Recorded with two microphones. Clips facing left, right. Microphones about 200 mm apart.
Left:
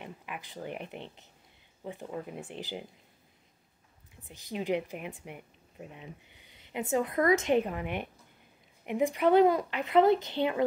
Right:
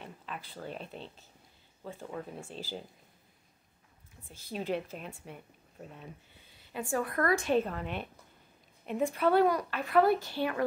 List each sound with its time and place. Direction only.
0.0 s a woman's voice: 15° left (ahead or behind)
4.2 s a woman's voice: 15° left (ahead or behind)